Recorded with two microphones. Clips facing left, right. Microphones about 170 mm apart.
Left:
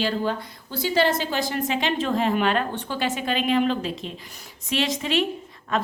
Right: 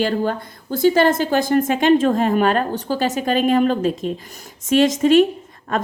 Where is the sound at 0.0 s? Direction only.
50° right (ahead or behind).